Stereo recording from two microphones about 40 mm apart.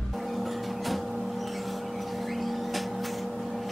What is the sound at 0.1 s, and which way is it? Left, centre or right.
Vehicle, centre.